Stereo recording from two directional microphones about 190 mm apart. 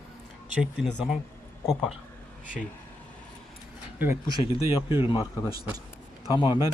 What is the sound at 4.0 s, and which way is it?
Speech, 15° right (ahead or behind).